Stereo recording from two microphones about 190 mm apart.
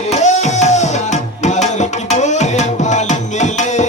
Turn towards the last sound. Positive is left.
turn(degrees=40)  # may be behind; listen again after turning